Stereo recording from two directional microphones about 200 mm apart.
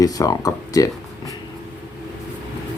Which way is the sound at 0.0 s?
15° left (ahead or behind).